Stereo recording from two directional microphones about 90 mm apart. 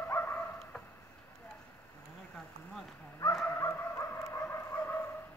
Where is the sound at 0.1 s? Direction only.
25° left (ahead or behind).